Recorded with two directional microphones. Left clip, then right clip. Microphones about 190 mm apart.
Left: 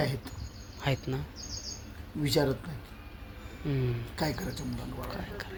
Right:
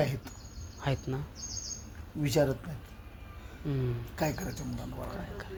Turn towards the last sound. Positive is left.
turn(degrees=5)  # may be behind; listen again after turning